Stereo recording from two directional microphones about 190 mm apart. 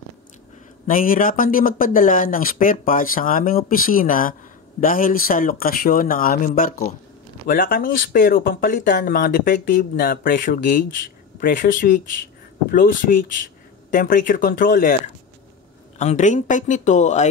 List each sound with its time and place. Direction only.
0.8 s speech: 45° left (ahead or behind)
16.0 s speech: 40° left (ahead or behind)